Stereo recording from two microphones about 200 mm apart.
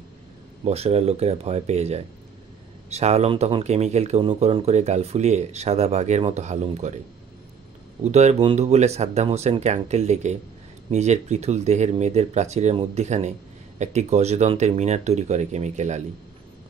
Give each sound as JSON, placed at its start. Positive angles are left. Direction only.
{"t": 0.7, "sound": "speech", "side_deg": -30}
{"t": 8.0, "sound": "speech", "side_deg": -35}